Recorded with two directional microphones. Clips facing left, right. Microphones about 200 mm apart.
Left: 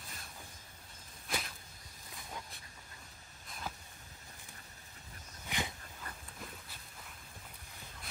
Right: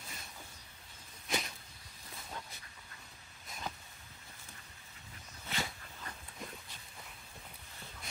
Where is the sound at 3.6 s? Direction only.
5° left (ahead or behind).